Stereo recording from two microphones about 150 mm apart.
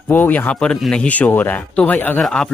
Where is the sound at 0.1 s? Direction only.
10° left (ahead or behind).